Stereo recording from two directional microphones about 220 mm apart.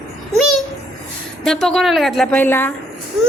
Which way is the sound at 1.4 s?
Centre (ahead or behind).